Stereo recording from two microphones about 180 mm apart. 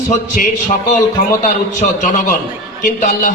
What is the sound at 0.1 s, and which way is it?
Speech, 45° left (ahead or behind).